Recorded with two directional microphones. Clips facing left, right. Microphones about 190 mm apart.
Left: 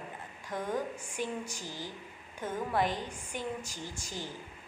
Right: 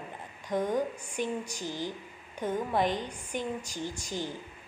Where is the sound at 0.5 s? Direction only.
15° right (ahead or behind).